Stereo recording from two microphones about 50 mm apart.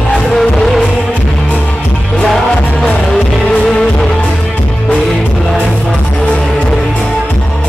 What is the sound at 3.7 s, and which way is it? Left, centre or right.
Music, centre.